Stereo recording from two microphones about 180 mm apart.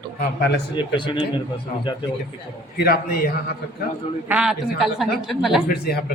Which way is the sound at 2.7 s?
55° left (ahead or behind).